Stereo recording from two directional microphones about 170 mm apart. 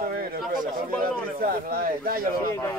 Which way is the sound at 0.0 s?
60° right (ahead or behind).